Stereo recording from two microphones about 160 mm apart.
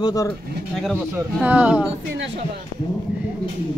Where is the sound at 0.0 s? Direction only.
25° left (ahead or behind).